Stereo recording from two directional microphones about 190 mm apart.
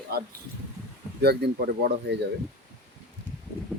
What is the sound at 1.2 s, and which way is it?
Speech, 60° right (ahead or behind).